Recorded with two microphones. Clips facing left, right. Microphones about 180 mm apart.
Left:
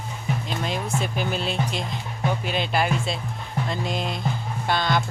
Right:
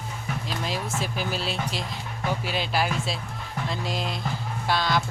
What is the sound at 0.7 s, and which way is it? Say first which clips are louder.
Speech: left 3 dB; centre (ahead or behind).